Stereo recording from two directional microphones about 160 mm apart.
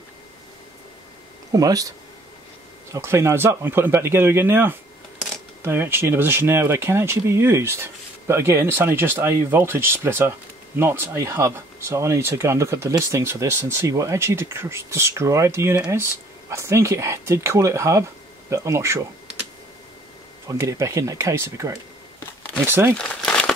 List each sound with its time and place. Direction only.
1.5 s speech: 20° right (ahead or behind)
20.4 s speech: 20° right (ahead or behind)
22.9 s crumpling: 5° left (ahead or behind)